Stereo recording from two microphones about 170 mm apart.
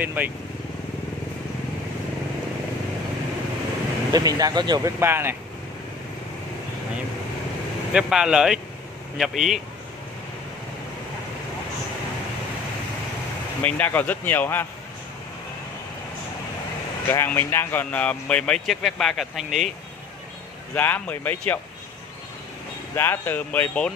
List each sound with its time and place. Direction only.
0.0 s speech: 10° right (ahead or behind)
4.1 s speech: 20° right (ahead or behind)
7.9 s speech: 5° right (ahead or behind)
13.6 s speech: 10° left (ahead or behind)
17.1 s speech: 15° left (ahead or behind)
20.7 s speech: 10° left (ahead or behind)
22.9 s speech: 10° left (ahead or behind)